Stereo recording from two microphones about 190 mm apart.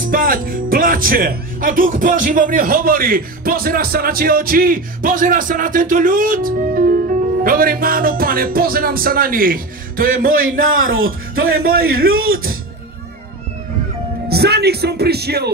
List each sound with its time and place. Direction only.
0.0 s speech: 50° right (ahead or behind)
10.7 s speech: 90° right
11.6 s speech: 50° right (ahead or behind)
14.3 s speech: 55° right (ahead or behind)